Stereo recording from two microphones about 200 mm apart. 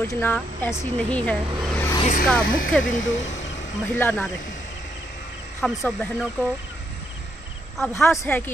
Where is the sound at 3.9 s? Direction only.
10° left (ahead or behind).